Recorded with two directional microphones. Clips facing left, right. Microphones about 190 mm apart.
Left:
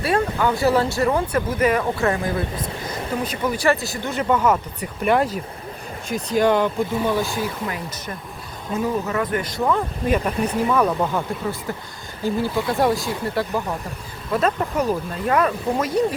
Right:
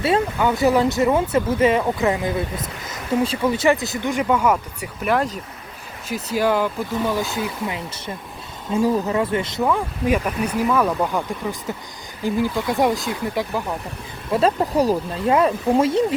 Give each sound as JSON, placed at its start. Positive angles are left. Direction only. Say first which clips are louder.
{"t": 0.0, "sound": "speech", "louder": "right 1 dB", "side_deg": -20}
{"t": 7.3, "sound": "speech", "louder": "even", "side_deg": -20}
{"t": 9.6, "sound": "speech", "louder": "even", "side_deg": -10}
{"t": 12.2, "sound": "speech", "louder": "right 1 dB", "side_deg": -15}
{"t": 14.3, "sound": "speech", "louder": "right 2 dB", "side_deg": -30}